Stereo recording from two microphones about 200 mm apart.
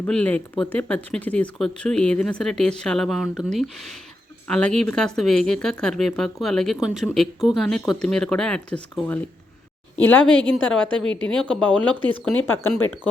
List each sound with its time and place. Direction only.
0.0 s speech: 5° left (ahead or behind)